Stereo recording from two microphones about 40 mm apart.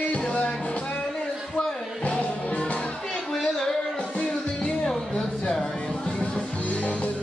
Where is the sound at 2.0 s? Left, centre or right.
Left.